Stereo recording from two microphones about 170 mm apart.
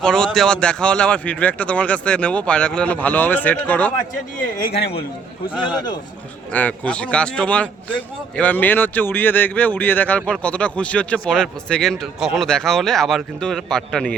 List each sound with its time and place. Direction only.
0.0 s speech: 5° left (ahead or behind)
4.5 s speech: 60° left (ahead or behind)
6.5 s speech: 10° left (ahead or behind)